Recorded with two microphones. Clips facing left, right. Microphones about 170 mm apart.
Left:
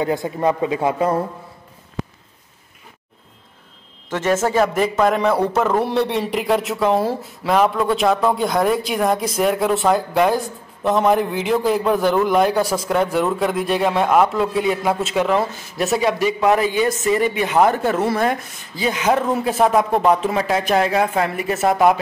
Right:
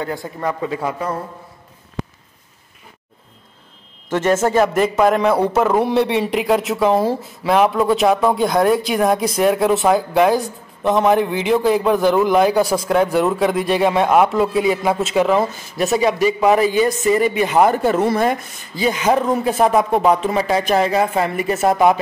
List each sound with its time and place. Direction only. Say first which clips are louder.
0.0 s a man's voice: left 4 dB; 20° left (ahead or behind)
4.1 s a man's voice: right 2 dB; centre (ahead or behind)